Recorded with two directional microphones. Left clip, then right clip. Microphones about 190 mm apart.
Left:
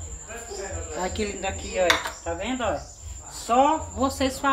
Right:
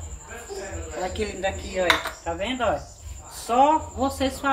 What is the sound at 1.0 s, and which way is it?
Speech, 30° left (ahead or behind).